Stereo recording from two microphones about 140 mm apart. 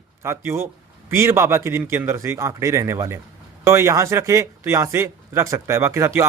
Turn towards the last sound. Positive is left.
turn(degrees=-20)  # may be behind; listen again after turning